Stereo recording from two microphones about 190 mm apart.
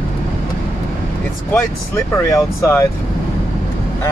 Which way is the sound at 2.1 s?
15° left (ahead or behind).